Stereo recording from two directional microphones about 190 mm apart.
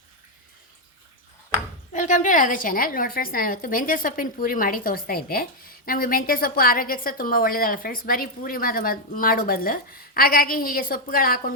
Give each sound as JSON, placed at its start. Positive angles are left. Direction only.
{"t": 1.9, "sound": "a woman's voice", "side_deg": 40}